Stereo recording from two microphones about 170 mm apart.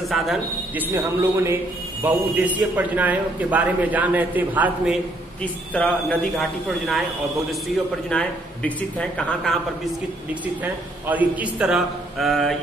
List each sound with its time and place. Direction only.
0.1 s a man's voice: centre (ahead or behind)
0.9 s a man's voice: 15° right (ahead or behind)
5.4 s a man's voice: 10° left (ahead or behind)
8.1 s speech: 5° left (ahead or behind)
10.4 s a man's voice: 10° right (ahead or behind)